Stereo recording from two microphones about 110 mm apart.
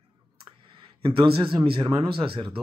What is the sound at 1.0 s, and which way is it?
A man's voice, 50° right (ahead or behind).